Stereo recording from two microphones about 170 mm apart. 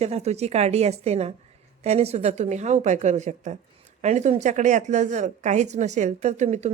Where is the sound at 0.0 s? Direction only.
40° right (ahead or behind).